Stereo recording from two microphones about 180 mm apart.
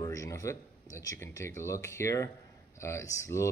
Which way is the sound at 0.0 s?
20° left (ahead or behind).